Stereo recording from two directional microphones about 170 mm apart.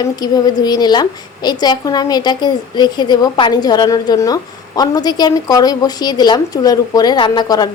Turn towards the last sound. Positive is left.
turn(degrees=25)  # may be behind; listen again after turning